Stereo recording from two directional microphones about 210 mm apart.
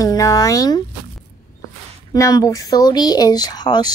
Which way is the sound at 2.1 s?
15° left (ahead or behind).